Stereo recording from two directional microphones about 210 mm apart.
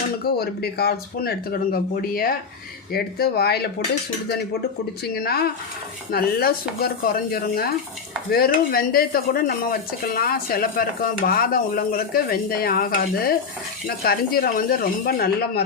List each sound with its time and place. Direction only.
0.3 s speech: 50° left (ahead or behind)
5.0 s speech: 45° left (ahead or behind)